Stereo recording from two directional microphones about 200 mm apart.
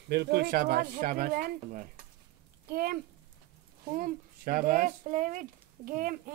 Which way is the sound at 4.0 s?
45° right (ahead or behind).